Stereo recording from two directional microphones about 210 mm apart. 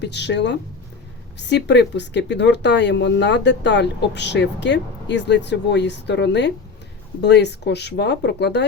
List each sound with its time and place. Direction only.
0.0 s speech: 55° left (ahead or behind)